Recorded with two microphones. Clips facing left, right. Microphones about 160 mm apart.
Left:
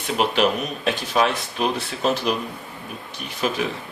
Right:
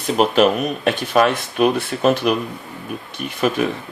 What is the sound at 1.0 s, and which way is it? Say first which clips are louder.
Speech: right 5 dB; 55° right (ahead or behind).